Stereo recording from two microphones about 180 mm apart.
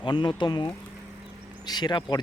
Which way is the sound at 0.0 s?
25° left (ahead or behind).